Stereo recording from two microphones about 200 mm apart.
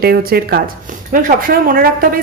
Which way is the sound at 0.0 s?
50° right (ahead or behind).